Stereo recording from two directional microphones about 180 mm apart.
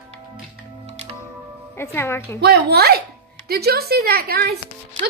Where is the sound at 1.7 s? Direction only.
15° left (ahead or behind).